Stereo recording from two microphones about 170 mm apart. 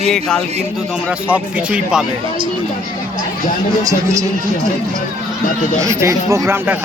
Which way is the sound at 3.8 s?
20° right (ahead or behind).